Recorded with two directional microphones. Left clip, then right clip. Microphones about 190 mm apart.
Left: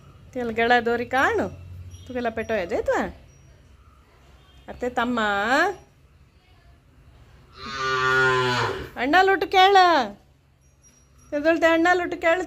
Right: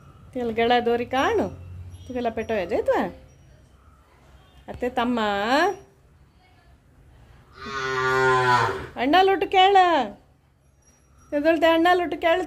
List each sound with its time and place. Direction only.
0.3 s a woman's voice: 15° right (ahead or behind)
4.6 s a woman's voice: 20° right (ahead or behind)
7.8 s cattle: 10° right (ahead or behind)
8.9 s a woman's voice: 20° right (ahead or behind)
11.2 s a woman's voice: 15° right (ahead or behind)